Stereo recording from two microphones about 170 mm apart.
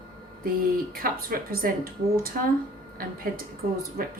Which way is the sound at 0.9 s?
60° right (ahead or behind).